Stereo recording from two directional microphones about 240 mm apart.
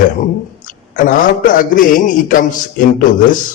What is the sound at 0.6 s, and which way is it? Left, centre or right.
A man's voice, left.